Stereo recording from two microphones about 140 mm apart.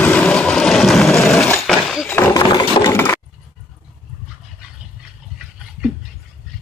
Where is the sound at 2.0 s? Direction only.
15° left (ahead or behind).